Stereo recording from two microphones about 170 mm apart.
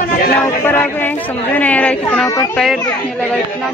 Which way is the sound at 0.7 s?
10° left (ahead or behind).